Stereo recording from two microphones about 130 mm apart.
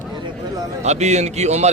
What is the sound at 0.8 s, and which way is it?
Speech, 60° right (ahead or behind).